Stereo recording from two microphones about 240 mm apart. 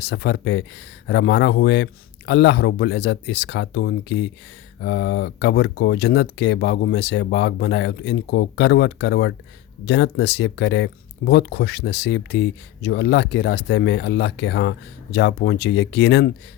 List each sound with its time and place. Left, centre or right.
0.0 s speech: left